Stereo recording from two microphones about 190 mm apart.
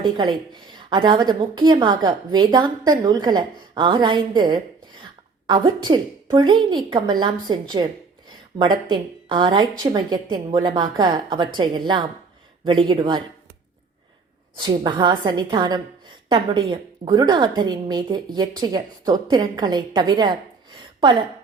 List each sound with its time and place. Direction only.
0.0 s a woman's voice: 25° right (ahead or behind)
14.6 s a woman's voice: 25° right (ahead or behind)